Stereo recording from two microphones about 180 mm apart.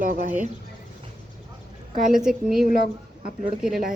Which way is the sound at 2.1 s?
5° right (ahead or behind).